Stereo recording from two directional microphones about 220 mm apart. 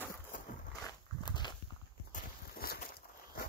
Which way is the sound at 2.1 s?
45° left (ahead or behind).